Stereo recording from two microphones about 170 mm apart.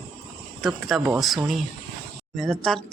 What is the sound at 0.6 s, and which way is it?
A woman's voice, centre (ahead or behind).